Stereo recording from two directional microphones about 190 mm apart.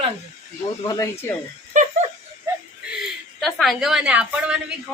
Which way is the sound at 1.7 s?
40° right (ahead or behind).